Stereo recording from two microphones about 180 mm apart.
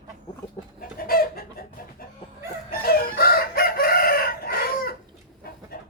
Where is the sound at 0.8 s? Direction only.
55° left (ahead or behind).